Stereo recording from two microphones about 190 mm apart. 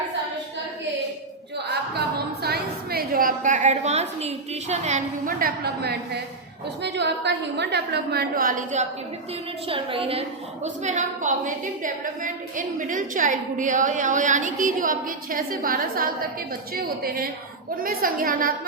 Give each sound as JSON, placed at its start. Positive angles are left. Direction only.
{"t": 2.0, "sound": "a sound", "side_deg": -55}
{"t": 6.8, "sound": "a woman's voice", "side_deg": -65}
{"t": 9.6, "sound": "a woman's voice", "side_deg": -30}